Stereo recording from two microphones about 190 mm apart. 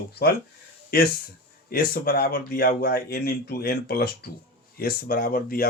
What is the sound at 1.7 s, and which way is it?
Speech, 50° left (ahead or behind).